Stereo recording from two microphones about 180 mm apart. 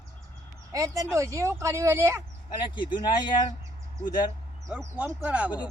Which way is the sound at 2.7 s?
25° left (ahead or behind).